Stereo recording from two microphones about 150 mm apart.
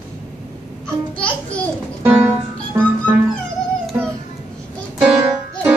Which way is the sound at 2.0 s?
15° right (ahead or behind).